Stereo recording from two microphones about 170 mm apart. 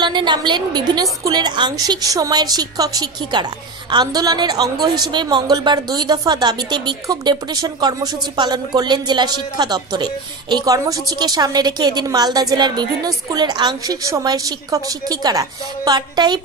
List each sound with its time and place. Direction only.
0.0 s a woman's voice: 25° right (ahead or behind)